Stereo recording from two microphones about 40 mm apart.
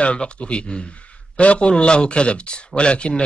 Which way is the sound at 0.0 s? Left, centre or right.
Left.